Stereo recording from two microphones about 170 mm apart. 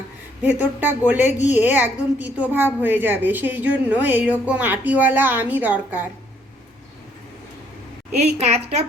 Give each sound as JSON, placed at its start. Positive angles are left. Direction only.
{"t": 0.4, "sound": "a woman's voice", "side_deg": -10}
{"t": 8.4, "sound": "a woman's voice", "side_deg": -40}